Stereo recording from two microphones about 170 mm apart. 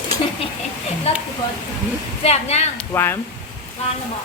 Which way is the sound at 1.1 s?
40° left (ahead or behind).